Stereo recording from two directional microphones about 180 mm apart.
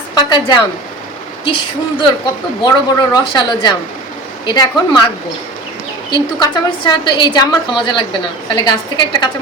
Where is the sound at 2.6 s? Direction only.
20° left (ahead or behind).